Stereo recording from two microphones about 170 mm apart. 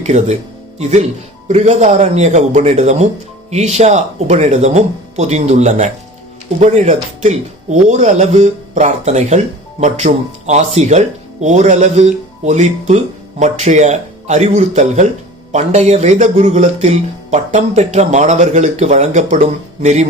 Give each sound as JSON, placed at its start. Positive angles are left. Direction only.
{"t": 0.0, "sound": "speech", "side_deg": -45}